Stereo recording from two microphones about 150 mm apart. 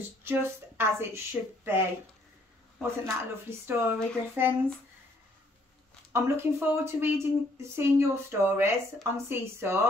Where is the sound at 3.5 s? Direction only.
15° right (ahead or behind).